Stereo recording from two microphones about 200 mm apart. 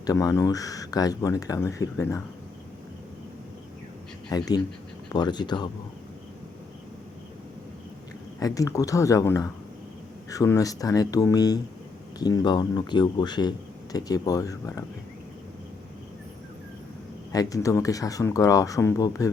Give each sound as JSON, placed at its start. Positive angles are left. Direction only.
{"t": 0.0, "sound": "speech", "side_deg": 15}
{"t": 4.3, "sound": "speech", "side_deg": 20}
{"t": 8.4, "sound": "speech", "side_deg": 15}
{"t": 17.3, "sound": "speech", "side_deg": 15}